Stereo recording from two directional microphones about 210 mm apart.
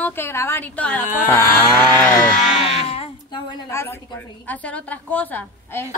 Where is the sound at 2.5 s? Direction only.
30° left (ahead or behind).